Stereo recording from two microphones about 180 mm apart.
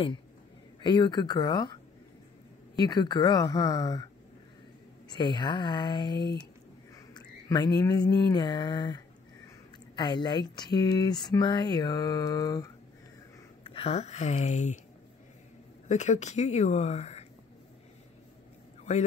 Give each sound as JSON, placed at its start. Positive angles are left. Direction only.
{"t": 0.8, "sound": "speech", "side_deg": 25}
{"t": 2.8, "sound": "speech", "side_deg": 25}
{"t": 5.1, "sound": "speech", "side_deg": 25}
{"t": 7.2, "sound": "a sound", "side_deg": 20}
{"t": 9.9, "sound": "speech", "side_deg": 25}
{"t": 13.7, "sound": "speech", "side_deg": 30}
{"t": 15.9, "sound": "speech", "side_deg": 40}
{"t": 18.9, "sound": "speech", "side_deg": 40}